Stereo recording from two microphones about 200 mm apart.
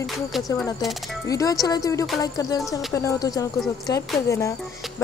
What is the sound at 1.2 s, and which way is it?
A woman's voice, 15° left (ahead or behind).